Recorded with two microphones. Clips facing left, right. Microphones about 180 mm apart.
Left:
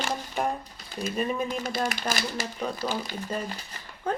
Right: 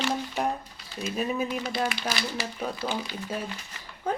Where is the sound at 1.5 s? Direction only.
45° left (ahead or behind).